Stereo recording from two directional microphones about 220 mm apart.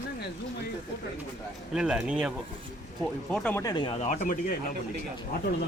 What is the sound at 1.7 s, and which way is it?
Speech, 5° right (ahead or behind).